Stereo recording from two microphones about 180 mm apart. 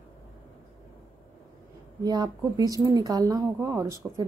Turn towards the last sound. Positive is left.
turn(degrees=-15)  # may be behind; listen again after turning